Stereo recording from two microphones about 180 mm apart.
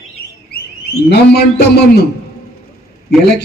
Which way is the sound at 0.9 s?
65° left (ahead or behind).